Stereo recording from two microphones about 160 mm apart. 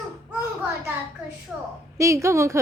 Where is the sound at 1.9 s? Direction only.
20° right (ahead or behind).